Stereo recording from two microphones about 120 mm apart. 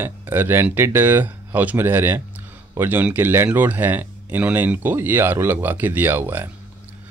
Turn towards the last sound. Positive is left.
turn(degrees=-15)  # may be behind; listen again after turning